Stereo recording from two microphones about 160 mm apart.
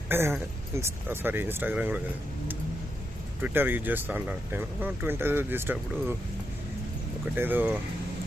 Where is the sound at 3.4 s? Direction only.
15° right (ahead or behind).